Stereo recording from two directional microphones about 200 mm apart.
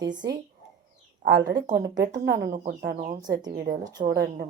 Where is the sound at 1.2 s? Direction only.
55° right (ahead or behind).